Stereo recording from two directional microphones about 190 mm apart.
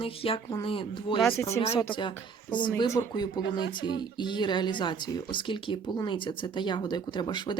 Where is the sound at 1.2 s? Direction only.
10° left (ahead or behind).